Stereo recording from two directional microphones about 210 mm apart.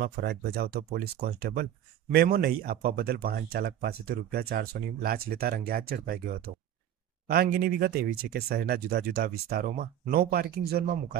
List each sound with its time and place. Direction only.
0.0 s speech: 50° right (ahead or behind)